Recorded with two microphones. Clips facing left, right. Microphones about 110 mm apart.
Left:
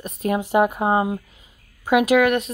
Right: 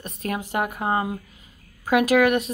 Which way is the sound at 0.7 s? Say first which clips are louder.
Left 4 dB; 20° left (ahead or behind).